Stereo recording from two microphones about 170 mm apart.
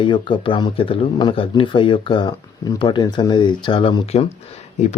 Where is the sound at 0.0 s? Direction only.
30° left (ahead or behind).